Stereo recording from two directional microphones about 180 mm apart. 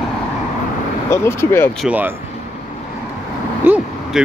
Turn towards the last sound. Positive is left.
turn(degrees=-10)  # may be behind; listen again after turning